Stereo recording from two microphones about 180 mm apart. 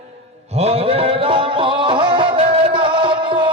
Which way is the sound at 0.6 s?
35° right (ahead or behind).